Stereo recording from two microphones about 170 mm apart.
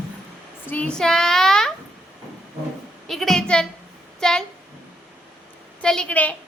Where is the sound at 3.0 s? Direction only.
Centre (ahead or behind).